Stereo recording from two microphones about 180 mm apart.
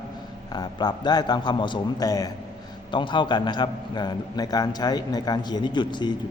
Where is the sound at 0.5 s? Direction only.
25° left (ahead or behind).